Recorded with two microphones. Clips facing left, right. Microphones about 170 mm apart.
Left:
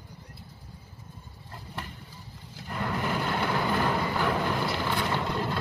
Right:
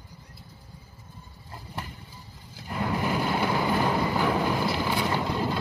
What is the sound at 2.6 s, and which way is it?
Music, 5° right (ahead or behind).